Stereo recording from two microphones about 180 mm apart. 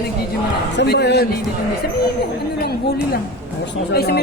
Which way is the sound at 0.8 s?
65° left (ahead or behind).